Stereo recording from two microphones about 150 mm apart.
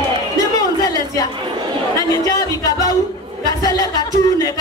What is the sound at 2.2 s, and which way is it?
Speech, 25° left (ahead or behind).